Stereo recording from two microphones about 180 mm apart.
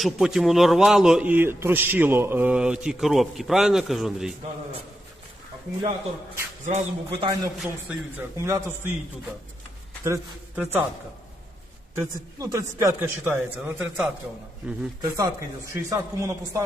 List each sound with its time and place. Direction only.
0.0 s a man's voice: centre (ahead or behind)
6.7 s a man's voice: 35° right (ahead or behind)
7.6 s a man's voice: 10° right (ahead or behind)
10.0 s speech: 10° right (ahead or behind)
11.9 s a man's voice: 15° right (ahead or behind)
15.1 s a man's voice: 15° right (ahead or behind)